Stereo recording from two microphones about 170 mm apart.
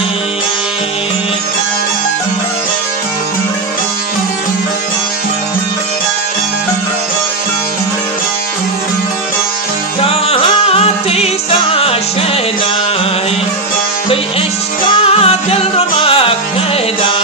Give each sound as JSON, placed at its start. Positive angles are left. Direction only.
{"t": 10.0, "sound": "music", "side_deg": 35}
{"t": 15.0, "sound": "music", "side_deg": 35}